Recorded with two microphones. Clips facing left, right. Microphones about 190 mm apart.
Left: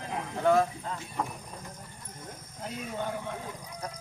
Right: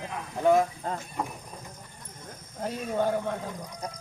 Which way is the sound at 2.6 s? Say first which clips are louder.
Right 7 dB; 45° right (ahead or behind).